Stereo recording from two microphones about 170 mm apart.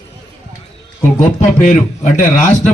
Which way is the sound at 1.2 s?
45° left (ahead or behind).